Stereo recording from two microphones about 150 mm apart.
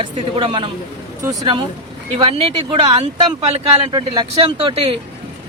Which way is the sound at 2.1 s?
40° right (ahead or behind).